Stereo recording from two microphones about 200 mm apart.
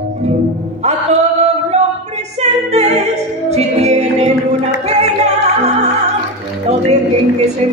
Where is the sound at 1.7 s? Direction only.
35° right (ahead or behind).